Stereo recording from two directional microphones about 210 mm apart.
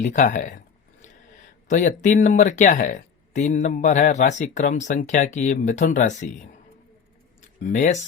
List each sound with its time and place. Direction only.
0.0 s speech: 35° left (ahead or behind)
1.6 s speech: 35° left (ahead or behind)
7.6 s speech: 35° left (ahead or behind)